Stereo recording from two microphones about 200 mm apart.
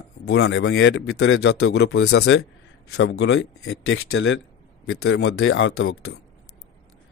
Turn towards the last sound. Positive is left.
turn(degrees=85)